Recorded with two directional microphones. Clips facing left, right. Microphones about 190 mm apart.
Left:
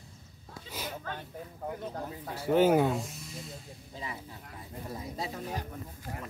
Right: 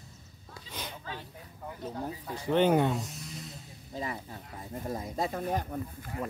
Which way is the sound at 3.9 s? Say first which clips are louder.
Right 5 dB; 45° right (ahead or behind).